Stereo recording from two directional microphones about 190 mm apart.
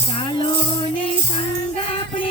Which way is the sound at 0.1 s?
25° left (ahead or behind).